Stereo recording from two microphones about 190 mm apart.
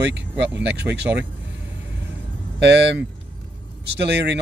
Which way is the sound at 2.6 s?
65° right (ahead or behind).